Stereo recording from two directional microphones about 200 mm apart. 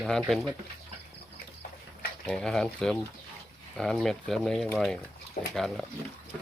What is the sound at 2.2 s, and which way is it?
Speech, 5° left (ahead or behind).